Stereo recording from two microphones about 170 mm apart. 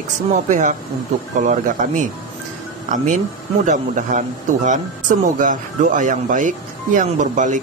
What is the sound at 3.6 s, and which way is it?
Speech, 45° right (ahead or behind).